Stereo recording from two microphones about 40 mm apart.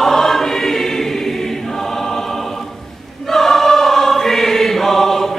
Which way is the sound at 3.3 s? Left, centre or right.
Centre.